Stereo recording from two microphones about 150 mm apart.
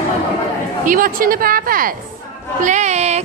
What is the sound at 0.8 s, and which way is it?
Speech, 70° right (ahead or behind).